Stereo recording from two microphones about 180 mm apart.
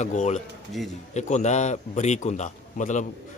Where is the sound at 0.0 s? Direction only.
40° left (ahead or behind).